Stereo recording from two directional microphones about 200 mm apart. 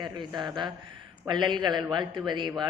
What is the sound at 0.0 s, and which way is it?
A man's voice, 20° right (ahead or behind).